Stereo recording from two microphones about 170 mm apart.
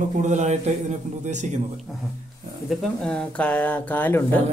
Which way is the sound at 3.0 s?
5° left (ahead or behind).